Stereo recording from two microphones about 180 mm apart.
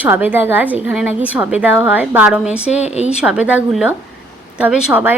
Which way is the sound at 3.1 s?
5° right (ahead or behind).